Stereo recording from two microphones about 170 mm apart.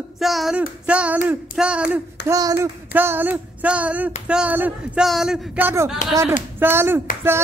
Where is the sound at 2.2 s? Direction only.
20° right (ahead or behind).